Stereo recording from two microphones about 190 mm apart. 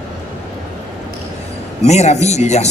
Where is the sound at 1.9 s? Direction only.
35° left (ahead or behind).